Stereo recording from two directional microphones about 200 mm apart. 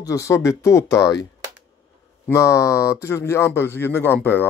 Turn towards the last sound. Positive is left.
turn(degrees=10)  # may be behind; listen again after turning